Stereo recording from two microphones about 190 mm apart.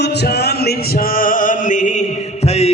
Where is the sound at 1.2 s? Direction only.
45° left (ahead or behind).